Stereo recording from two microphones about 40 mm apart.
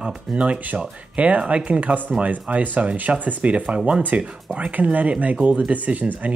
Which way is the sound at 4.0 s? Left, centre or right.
Right.